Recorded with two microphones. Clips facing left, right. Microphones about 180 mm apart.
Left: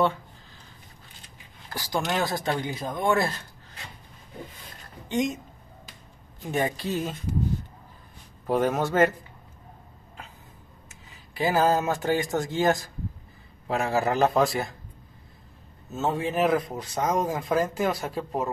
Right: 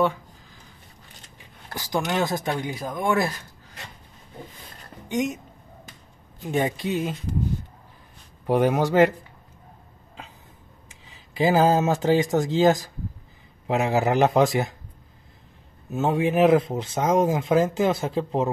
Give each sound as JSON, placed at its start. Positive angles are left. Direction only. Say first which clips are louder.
{"t": 1.8, "sound": "speech", "louder": "right 2 dB", "side_deg": -15}
{"t": 5.0, "sound": "a woman's voice", "louder": "right 1 dB", "side_deg": -10}
{"t": 6.5, "sound": "speech", "louder": "right 3 dB", "side_deg": -20}
{"t": 8.5, "sound": "speech", "louder": "right 4 dB", "side_deg": -15}
{"t": 11.3, "sound": "speech", "louder": "right 4 dB", "side_deg": -20}
{"t": 15.9, "sound": "speech", "louder": "right 5 dB", "side_deg": -15}